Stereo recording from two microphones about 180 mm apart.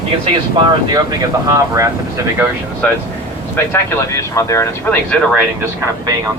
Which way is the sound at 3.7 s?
15° left (ahead or behind).